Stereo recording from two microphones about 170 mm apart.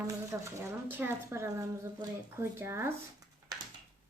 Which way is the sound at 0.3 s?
15° right (ahead or behind).